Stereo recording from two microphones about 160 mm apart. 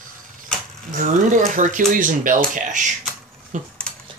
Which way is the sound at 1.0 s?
50° right (ahead or behind).